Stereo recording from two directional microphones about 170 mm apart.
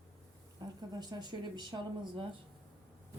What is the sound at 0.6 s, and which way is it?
Speech, 25° right (ahead or behind).